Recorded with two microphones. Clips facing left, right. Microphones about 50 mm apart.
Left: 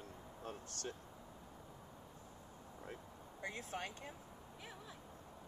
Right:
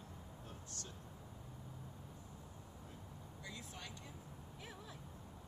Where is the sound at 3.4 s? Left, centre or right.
Left.